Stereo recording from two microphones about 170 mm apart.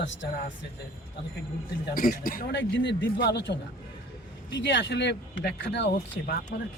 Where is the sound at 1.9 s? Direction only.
55° left (ahead or behind); by 3.5 s 80° left.